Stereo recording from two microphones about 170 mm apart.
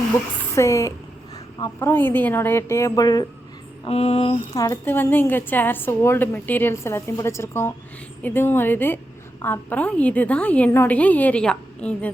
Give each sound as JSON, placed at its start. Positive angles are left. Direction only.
{"t": 0.5, "sound": "a woman's voice", "side_deg": 15}
{"t": 3.8, "sound": "a sound", "side_deg": 35}
{"t": 4.5, "sound": "a woman's voice", "side_deg": 15}